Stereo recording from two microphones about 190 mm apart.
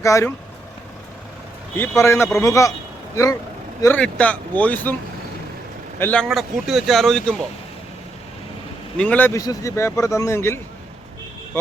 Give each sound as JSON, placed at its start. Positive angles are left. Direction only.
{"t": 0.0, "sound": "speech", "side_deg": 15}
{"t": 2.0, "sound": "speech", "side_deg": 15}
{"t": 3.8, "sound": "speech", "side_deg": 10}
{"t": 6.0, "sound": "speech", "side_deg": 5}
{"t": 9.0, "sound": "speech", "side_deg": 10}